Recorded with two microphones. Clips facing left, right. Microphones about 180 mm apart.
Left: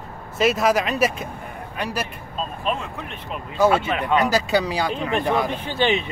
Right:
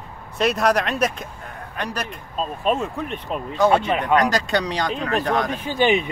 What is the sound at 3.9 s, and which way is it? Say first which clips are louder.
Speech: right 2 dB; 20° right (ahead or behind).